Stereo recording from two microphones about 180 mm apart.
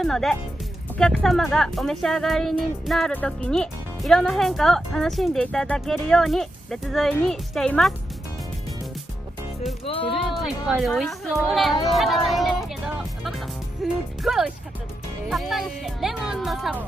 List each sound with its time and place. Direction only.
0.0 s speech: centre (ahead or behind)
9.8 s speech: 30° left (ahead or behind)
10.1 s a woman's voice: centre (ahead or behind)